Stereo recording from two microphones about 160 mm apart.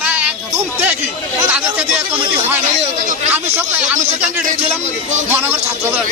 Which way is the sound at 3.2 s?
10° right (ahead or behind).